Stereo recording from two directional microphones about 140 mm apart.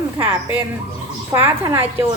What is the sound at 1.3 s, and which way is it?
Speech, 15° right (ahead or behind).